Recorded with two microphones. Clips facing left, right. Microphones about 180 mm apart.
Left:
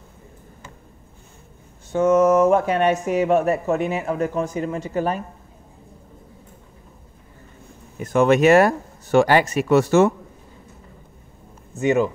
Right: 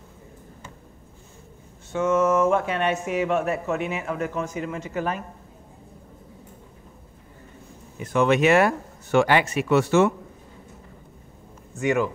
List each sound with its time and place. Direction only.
1.9 s speech: 40° left (ahead or behind)
8.0 s speech: 45° left (ahead or behind)
11.8 s speech: 25° left (ahead or behind)